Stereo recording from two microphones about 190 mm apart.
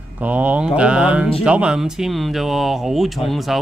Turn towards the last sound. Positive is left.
turn(degrees=0)  # may be behind; listen again after turning